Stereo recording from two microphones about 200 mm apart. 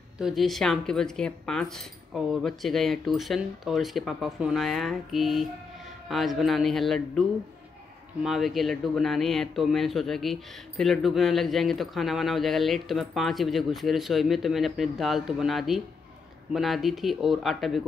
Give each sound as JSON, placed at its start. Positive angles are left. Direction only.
{"t": 0.2, "sound": "speech", "side_deg": 0}